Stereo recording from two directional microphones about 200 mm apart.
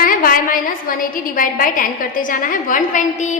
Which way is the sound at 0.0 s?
45° left (ahead or behind).